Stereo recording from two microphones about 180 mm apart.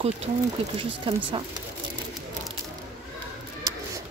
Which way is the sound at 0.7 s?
30° right (ahead or behind).